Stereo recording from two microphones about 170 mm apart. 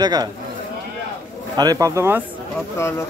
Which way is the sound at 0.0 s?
25° right (ahead or behind).